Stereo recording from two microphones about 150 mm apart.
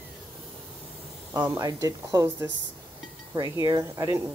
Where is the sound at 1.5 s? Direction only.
25° right (ahead or behind).